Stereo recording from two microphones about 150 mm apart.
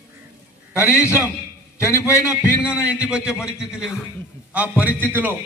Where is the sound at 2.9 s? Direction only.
10° right (ahead or behind).